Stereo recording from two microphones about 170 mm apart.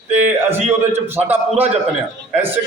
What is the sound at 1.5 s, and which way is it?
Speech, 35° right (ahead or behind).